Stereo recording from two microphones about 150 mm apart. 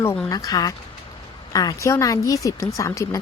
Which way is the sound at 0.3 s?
25° left (ahead or behind).